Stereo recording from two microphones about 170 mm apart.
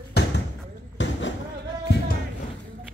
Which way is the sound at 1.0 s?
90° left.